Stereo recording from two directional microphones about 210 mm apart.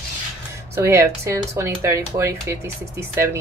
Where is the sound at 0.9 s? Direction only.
15° right (ahead or behind).